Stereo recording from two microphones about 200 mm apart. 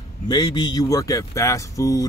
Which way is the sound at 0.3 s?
20° left (ahead or behind).